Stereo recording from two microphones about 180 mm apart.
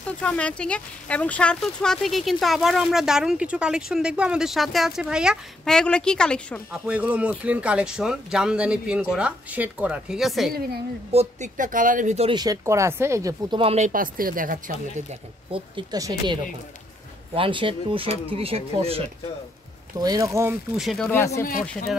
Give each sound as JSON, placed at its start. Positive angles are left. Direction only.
{"t": 0.2, "sound": "speech", "side_deg": 5}
{"t": 6.9, "sound": "speech", "side_deg": -5}
{"t": 11.1, "sound": "speech", "side_deg": -40}
{"t": 12.3, "sound": "speech", "side_deg": -20}
{"t": 13.6, "sound": "speech", "side_deg": -35}
{"t": 15.5, "sound": "speech", "side_deg": -25}
{"t": 20.0, "sound": "speech", "side_deg": -20}
{"t": 20.7, "sound": "speech", "side_deg": 0}